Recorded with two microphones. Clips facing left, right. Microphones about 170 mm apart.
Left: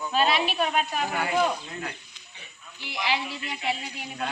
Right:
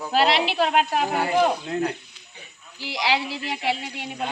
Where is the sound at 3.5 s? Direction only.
70° right (ahead or behind).